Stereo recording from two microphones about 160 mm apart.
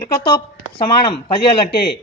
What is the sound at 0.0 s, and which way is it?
A man's voice, 25° left (ahead or behind).